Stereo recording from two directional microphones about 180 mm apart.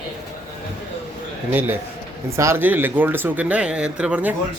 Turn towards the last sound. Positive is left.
turn(degrees=-5)  # may be behind; listen again after turning